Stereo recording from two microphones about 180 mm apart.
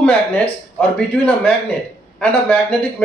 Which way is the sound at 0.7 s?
5° left (ahead or behind).